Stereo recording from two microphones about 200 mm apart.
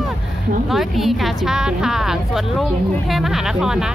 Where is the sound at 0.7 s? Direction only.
Centre (ahead or behind).